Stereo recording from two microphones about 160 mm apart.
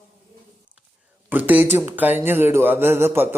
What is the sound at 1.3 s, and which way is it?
A man's voice, 10° right (ahead or behind).